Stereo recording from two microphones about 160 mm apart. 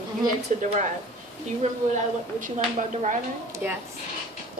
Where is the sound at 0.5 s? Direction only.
50° right (ahead or behind).